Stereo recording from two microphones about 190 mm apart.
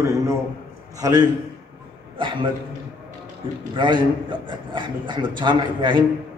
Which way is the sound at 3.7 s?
25° right (ahead or behind).